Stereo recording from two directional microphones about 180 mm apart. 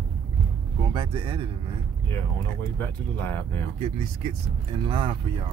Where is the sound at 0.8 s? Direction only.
25° right (ahead or behind).